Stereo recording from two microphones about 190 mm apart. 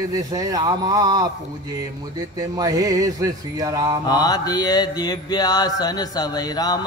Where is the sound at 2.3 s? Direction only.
20° right (ahead or behind).